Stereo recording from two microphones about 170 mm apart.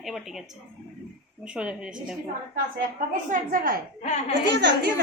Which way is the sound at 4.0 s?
45° left (ahead or behind).